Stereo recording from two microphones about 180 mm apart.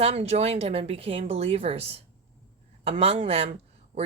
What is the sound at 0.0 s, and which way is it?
A woman's voice, 35° right (ahead or behind).